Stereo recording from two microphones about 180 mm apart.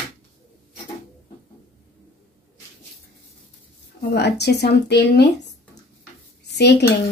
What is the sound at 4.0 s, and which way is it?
Speech, 65° left (ahead or behind).